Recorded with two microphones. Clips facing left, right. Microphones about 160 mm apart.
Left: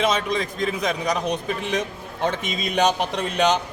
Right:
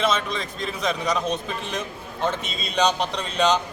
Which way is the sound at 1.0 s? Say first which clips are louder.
Left 1 dB; 15° left (ahead or behind).